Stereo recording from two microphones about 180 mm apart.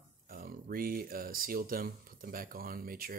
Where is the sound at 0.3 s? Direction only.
50° right (ahead or behind).